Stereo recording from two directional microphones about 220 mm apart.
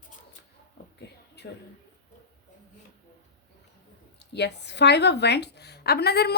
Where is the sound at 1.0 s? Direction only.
50° left (ahead or behind).